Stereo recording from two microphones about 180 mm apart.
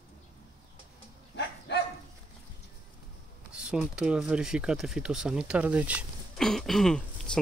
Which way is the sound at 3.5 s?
5° right (ahead or behind).